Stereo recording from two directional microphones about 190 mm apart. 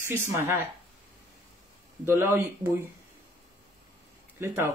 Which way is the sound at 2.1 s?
15° right (ahead or behind).